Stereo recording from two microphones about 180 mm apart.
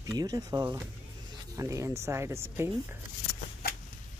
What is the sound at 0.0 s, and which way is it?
Speech, 20° right (ahead or behind).